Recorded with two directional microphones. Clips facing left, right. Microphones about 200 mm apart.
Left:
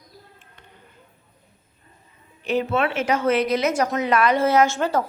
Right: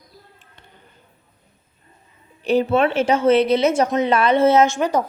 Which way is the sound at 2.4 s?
35° right (ahead or behind).